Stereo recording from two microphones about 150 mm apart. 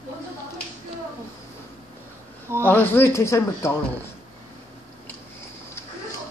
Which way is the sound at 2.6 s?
15° left (ahead or behind).